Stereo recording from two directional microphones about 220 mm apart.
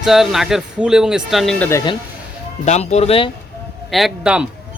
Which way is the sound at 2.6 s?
30° left (ahead or behind).